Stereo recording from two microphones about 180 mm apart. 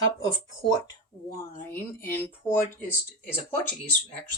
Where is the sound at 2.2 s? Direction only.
15° left (ahead or behind).